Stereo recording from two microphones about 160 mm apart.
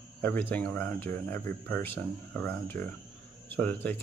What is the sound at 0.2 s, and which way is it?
Speech, 10° left (ahead or behind).